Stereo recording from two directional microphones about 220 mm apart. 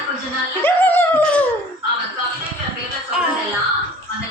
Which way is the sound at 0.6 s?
10° left (ahead or behind).